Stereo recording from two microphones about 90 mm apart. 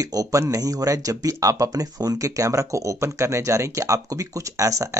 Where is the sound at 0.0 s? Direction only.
40° right (ahead or behind).